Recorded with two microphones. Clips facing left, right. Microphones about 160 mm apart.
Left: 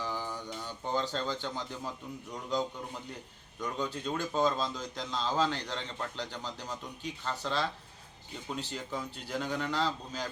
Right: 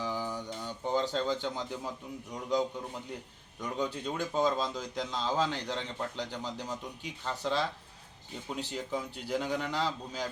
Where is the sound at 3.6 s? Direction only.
10° right (ahead or behind).